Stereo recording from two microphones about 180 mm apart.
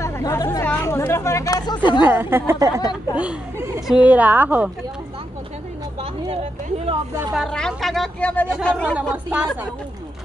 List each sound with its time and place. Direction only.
0.0 s speech: 15° left (ahead or behind)
2.0 s a woman's voice: 10° right (ahead or behind)
2.8 s speech: 20° left (ahead or behind)
3.2 s a woman's voice: 10° right (ahead or behind)
6.2 s speech: 30° right (ahead or behind)
7.3 s speech: 5° left (ahead or behind)